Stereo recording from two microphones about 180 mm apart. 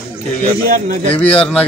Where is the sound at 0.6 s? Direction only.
50° right (ahead or behind).